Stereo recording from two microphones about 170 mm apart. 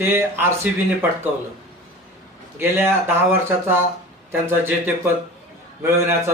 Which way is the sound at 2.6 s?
15° right (ahead or behind).